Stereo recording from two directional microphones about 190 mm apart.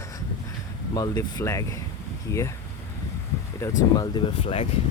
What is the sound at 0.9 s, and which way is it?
Speech, 20° left (ahead or behind).